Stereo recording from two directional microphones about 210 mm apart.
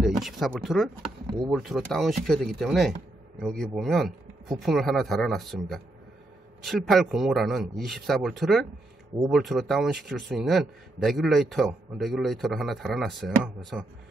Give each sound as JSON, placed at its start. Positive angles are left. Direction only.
{"t": 0.0, "sound": "a man's voice", "side_deg": 0}
{"t": 6.9, "sound": "a man's voice", "side_deg": 0}